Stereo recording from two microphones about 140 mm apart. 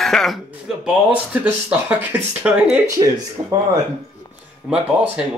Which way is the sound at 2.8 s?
25° right (ahead or behind).